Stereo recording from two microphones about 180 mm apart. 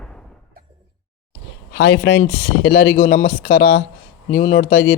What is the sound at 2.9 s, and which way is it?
Speech, 45° left (ahead or behind).